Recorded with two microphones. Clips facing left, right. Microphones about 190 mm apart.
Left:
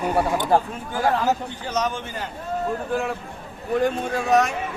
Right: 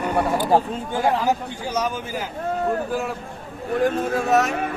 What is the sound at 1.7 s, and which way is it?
Speech, 10° right (ahead or behind).